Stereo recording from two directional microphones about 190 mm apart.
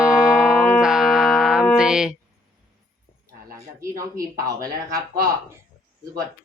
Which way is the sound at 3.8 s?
15° right (ahead or behind).